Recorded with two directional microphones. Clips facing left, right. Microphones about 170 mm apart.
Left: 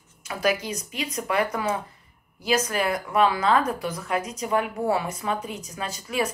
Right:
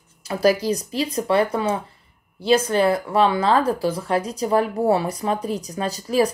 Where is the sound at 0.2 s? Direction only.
35° right (ahead or behind).